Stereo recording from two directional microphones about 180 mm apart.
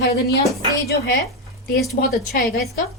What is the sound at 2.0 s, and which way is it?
Speech, 50° left (ahead or behind).